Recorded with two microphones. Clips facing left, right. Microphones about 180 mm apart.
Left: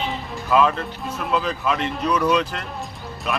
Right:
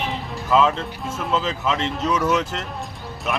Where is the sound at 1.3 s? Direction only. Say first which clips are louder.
Even; 10° left (ahead or behind).